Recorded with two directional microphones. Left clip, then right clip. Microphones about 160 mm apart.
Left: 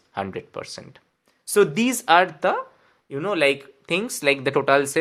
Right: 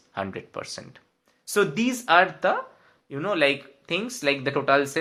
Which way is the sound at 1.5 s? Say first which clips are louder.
Left 4 dB; 40° left (ahead or behind).